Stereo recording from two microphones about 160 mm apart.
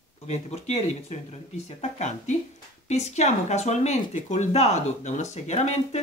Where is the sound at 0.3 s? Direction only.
40° left (ahead or behind).